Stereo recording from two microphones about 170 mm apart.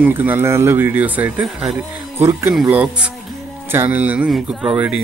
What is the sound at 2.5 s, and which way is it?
Speech, 5° right (ahead or behind).